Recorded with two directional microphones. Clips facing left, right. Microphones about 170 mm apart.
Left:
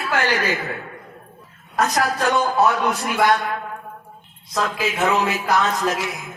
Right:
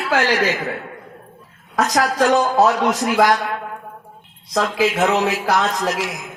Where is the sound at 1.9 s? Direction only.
90° right.